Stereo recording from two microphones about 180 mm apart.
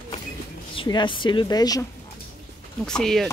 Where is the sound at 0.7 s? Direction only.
25° left (ahead or behind).